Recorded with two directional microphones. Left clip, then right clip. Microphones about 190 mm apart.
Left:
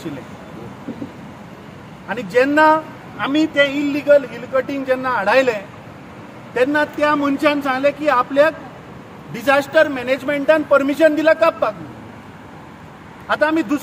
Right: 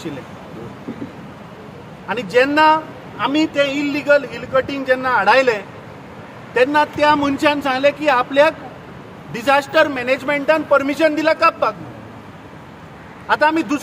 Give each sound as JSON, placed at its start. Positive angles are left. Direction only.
{"t": 2.0, "sound": "a man's voice", "side_deg": -5}
{"t": 13.3, "sound": "speech", "side_deg": -10}